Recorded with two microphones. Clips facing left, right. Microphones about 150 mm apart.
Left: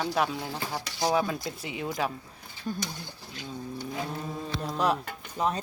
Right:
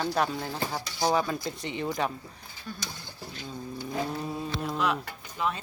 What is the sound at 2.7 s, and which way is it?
Speech, 45° left (ahead or behind).